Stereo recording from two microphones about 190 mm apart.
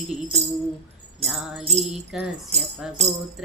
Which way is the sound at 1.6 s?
35° right (ahead or behind).